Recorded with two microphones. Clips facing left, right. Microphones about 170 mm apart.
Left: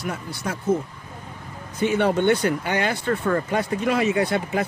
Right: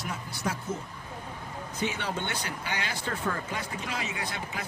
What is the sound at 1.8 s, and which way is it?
Speech, 55° left (ahead or behind).